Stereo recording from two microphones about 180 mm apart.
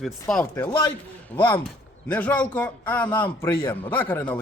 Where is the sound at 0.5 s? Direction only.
20° left (ahead or behind).